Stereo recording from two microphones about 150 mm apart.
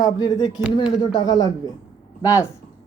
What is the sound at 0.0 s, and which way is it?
A man's voice, 25° left (ahead or behind).